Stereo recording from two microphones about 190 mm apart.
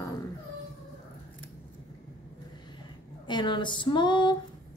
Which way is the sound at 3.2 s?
25° left (ahead or behind).